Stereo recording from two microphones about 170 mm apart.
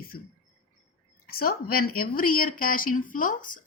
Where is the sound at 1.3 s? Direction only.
60° left (ahead or behind).